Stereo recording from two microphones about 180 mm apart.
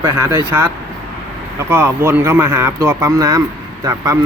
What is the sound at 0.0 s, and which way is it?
Speech, 20° right (ahead or behind).